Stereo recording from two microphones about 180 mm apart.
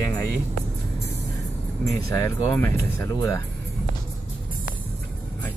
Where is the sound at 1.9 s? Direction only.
15° left (ahead or behind).